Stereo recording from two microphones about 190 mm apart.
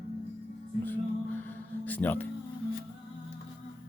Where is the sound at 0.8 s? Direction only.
10° left (ahead or behind).